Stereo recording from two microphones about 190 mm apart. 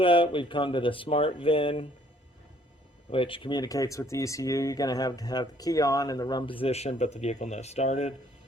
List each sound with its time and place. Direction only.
0.0 s speech: 25° left (ahead or behind)
3.1 s speech: 30° left (ahead or behind)